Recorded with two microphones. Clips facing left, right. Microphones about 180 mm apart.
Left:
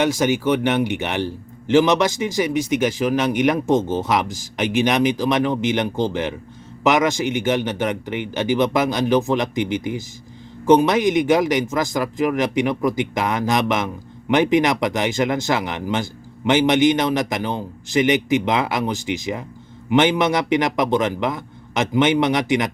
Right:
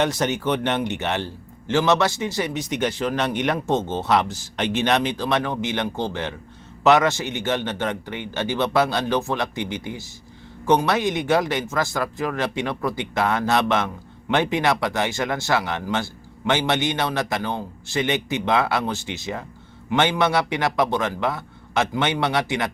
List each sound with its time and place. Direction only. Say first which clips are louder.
0.0 s a man's voice: left 4 dB; 10° left (ahead or behind)